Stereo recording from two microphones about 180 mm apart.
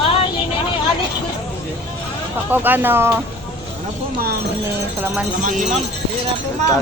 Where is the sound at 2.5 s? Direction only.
10° right (ahead or behind).